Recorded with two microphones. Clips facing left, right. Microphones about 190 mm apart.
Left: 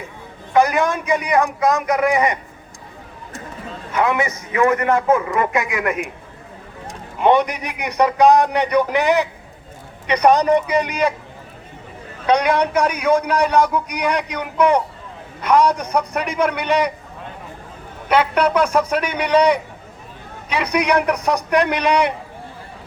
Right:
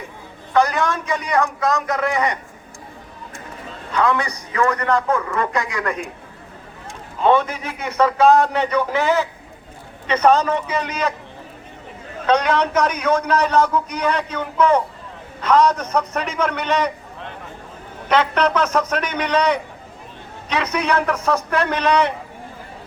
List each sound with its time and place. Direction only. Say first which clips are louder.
0.5 s a man's voice: left 2 dB; 15° left (ahead or behind)
3.9 s a man's voice: left 1 dB; 20° left (ahead or behind)
7.2 s a man's voice: left 1 dB; 15° left (ahead or behind)
12.2 s a man's voice: left 1 dB; 15° left (ahead or behind)
18.1 s a man's voice: left 1 dB; 10° left (ahead or behind)